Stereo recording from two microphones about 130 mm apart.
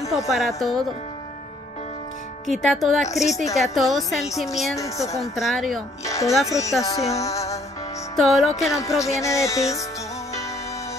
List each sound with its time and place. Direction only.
0.6 s a woman's voice: centre (ahead or behind)
2.4 s a woman's voice: centre (ahead or behind)
4.7 s music: 25° left (ahead or behind)
5.2 s a woman's voice: centre (ahead or behind)
6.0 s music: 25° left (ahead or behind)
8.2 s a woman's voice: centre (ahead or behind)
8.7 s music: 25° left (ahead or behind)